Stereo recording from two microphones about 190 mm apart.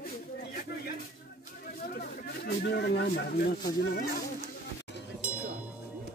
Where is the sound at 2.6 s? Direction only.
60° left (ahead or behind).